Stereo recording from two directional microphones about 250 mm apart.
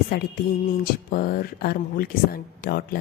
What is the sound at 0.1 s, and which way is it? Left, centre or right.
A woman's voice, left.